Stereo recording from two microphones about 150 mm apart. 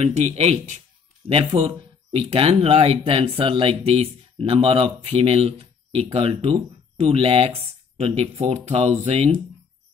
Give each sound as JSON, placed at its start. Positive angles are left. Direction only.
{"t": 0.0, "sound": "speech", "side_deg": -45}
{"t": 1.3, "sound": "speech", "side_deg": -35}